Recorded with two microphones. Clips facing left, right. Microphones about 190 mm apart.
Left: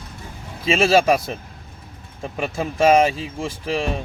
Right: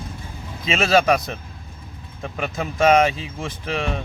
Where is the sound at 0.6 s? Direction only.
30° left (ahead or behind).